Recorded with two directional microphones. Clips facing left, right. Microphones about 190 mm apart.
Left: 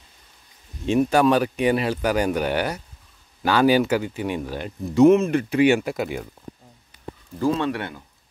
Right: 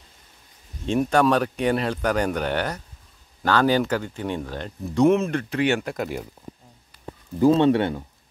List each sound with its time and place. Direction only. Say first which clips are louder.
0.8 s speech: left 2 dB; 5° left (ahead or behind)
7.3 s speech: right 6 dB; 20° right (ahead or behind)